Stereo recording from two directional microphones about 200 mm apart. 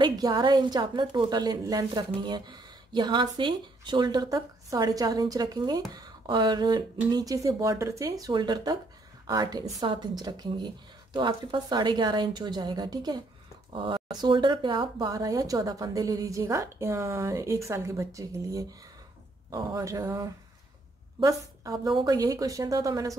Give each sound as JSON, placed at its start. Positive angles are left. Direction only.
{"t": 0.0, "sound": "a woman's voice", "side_deg": -20}